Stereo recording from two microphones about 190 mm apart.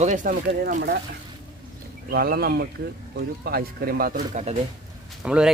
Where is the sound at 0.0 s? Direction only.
40° right (ahead or behind).